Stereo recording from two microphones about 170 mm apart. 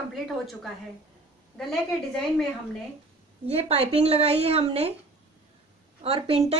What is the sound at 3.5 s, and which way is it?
A woman's voice, 35° right (ahead or behind).